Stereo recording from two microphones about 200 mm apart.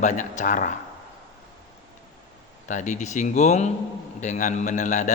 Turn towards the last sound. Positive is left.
turn(degrees=35)  # may be behind; listen again after turning